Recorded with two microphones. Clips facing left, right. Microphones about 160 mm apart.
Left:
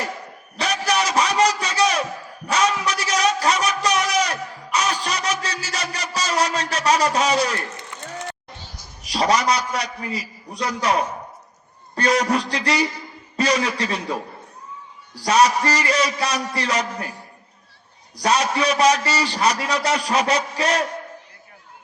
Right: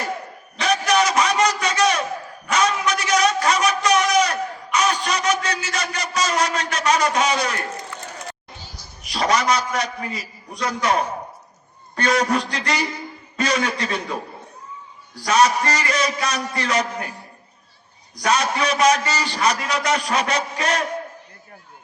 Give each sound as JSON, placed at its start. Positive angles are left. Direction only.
{"t": 0.9, "sound": "a sound", "side_deg": 35}
{"t": 4.3, "sound": "music", "side_deg": 30}
{"t": 9.0, "sound": "a man's voice", "side_deg": 35}
{"t": 15.1, "sound": "a man's voice", "side_deg": 35}
{"t": 18.2, "sound": "a man's voice", "side_deg": 30}